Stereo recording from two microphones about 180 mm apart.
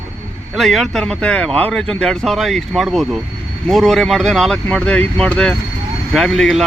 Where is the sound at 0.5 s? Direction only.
Centre (ahead or behind).